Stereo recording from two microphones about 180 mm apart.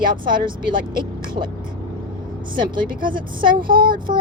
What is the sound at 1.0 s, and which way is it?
Speech, 25° right (ahead or behind).